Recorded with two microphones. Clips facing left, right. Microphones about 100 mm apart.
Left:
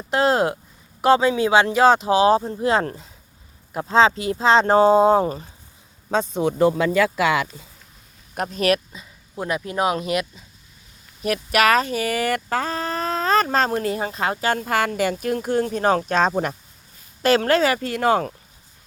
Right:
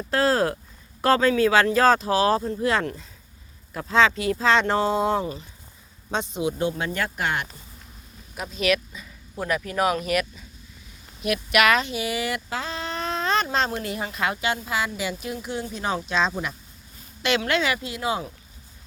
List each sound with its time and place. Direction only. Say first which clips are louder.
0.1 s speech: left 3 dB; 25° left (ahead or behind); by 6.4 s 45° left (ahead or behind)
6.4 s speech: left 8 dB; 75° left (ahead or behind)
8.4 s speech: left 4 dB; 50° left (ahead or behind); by 9.0 s 35° left (ahead or behind)
9.4 s speech: left 1 dB; 25° left (ahead or behind)
11.2 s speech: left 2 dB; 35° left (ahead or behind)
14.5 s speech: left 6 dB; 55° left (ahead or behind)
17.7 s speech: left 8 dB; 55° left (ahead or behind)